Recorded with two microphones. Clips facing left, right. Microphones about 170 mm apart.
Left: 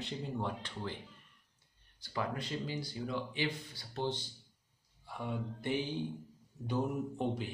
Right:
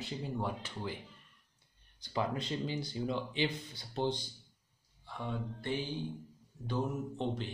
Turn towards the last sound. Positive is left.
turn(degrees=10)  # may be behind; listen again after turning